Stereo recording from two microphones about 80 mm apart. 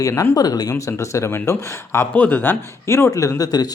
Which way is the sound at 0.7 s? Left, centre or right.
Left.